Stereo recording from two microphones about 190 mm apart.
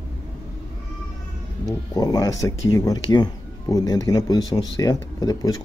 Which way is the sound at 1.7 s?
20° left (ahead or behind).